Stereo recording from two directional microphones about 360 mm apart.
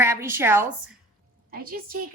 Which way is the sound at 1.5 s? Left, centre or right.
Right.